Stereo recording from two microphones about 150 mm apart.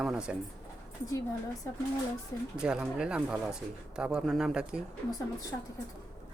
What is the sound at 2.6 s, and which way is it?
Speech, 5° right (ahead or behind).